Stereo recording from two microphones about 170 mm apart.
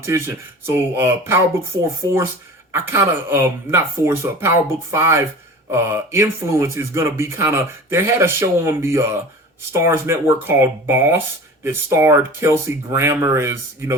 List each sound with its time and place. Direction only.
0.0 s speech: 15° right (ahead or behind)